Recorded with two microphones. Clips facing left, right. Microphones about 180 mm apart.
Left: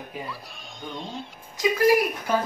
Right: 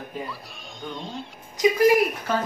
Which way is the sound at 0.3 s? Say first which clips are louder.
Even; centre (ahead or behind).